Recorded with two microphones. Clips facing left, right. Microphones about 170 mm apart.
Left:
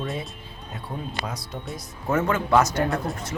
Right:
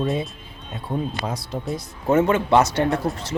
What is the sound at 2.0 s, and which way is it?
Speech, 25° right (ahead or behind).